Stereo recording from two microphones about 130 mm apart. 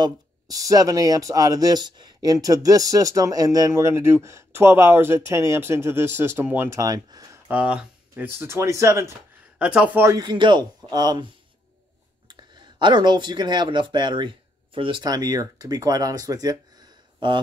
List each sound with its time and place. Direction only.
0.0 s speech: 25° right (ahead or behind)
7.4 s speech: 10° right (ahead or behind)
8.3 s speech: 20° right (ahead or behind)
9.6 s speech: 10° right (ahead or behind)
10.1 s speech: 35° right (ahead or behind)
12.3 s speech: 35° right (ahead or behind)